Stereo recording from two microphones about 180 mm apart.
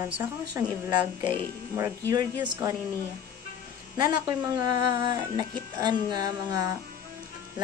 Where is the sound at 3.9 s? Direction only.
20° right (ahead or behind).